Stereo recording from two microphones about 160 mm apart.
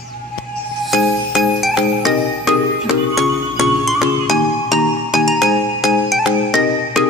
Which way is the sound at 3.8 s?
Centre (ahead or behind).